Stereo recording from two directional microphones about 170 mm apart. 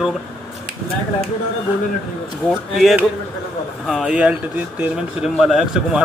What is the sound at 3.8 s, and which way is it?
A man's voice, 5° right (ahead or behind).